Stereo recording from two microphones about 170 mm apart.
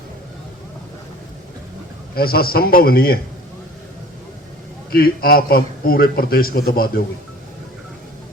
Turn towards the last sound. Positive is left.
turn(degrees=60)  # may be behind; listen again after turning